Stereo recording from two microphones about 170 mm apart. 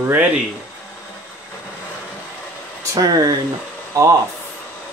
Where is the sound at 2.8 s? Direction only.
20° right (ahead or behind).